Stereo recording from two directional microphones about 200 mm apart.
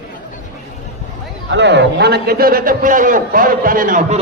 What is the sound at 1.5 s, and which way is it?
A man's voice, 60° right (ahead or behind).